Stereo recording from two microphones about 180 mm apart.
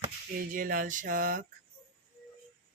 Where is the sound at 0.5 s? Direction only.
50° right (ahead or behind).